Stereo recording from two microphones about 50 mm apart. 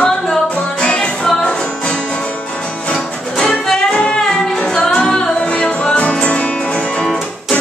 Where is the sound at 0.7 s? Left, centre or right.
Centre.